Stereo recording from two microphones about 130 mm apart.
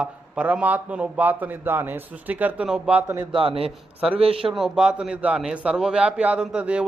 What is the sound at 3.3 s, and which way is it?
A man's voice, 45° right (ahead or behind).